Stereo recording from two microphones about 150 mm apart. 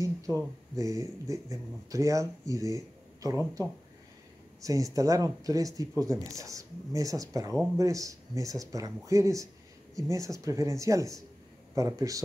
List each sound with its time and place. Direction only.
0.7 s speech: 20° right (ahead or behind)
4.6 s speech: 20° right (ahead or behind)